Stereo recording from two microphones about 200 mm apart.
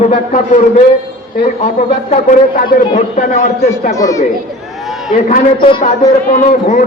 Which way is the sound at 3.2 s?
35° left (ahead or behind).